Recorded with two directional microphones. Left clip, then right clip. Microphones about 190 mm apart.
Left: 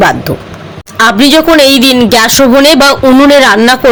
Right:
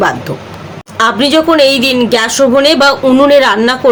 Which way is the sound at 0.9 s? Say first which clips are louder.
Left 4 dB; 45° left (ahead or behind).